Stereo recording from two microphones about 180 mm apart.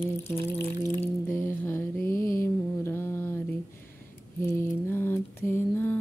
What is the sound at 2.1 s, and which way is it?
Mantra, 50° left (ahead or behind).